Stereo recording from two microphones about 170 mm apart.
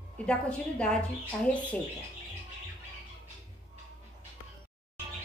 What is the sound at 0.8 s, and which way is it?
A woman's voice, 5° left (ahead or behind).